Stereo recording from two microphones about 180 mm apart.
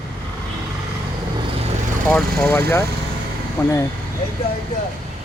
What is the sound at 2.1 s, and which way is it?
Speech, 10° left (ahead or behind).